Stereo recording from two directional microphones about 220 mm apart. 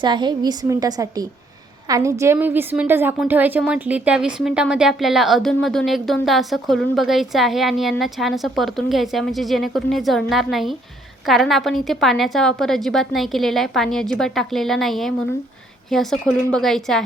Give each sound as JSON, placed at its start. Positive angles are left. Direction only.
{"t": 0.0, "sound": "a woman's voice", "side_deg": -20}